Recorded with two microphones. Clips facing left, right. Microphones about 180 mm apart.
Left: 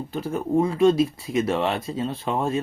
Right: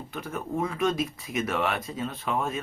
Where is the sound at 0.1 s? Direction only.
30° left (ahead or behind).